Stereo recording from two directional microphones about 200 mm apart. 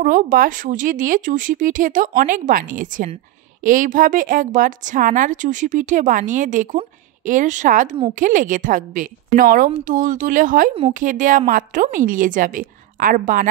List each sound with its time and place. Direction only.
0.0 s speech: 45° right (ahead or behind)